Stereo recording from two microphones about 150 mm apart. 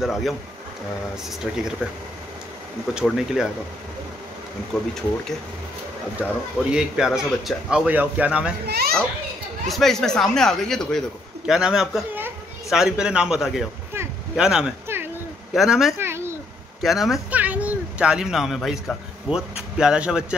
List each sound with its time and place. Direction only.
0.0 s a man's voice: centre (ahead or behind)
2.9 s a man's voice: 5° right (ahead or behind)
4.7 s a man's voice: centre (ahead or behind)
6.2 s speech: 5° right (ahead or behind)
8.6 s a child's voice: 90° right
9.7 s a man's voice: centre (ahead or behind)
16.0 s a sound: 15° right (ahead or behind)
16.8 s speech: centre (ahead or behind)